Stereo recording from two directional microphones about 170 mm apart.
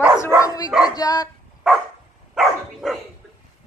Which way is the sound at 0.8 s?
20° left (ahead or behind).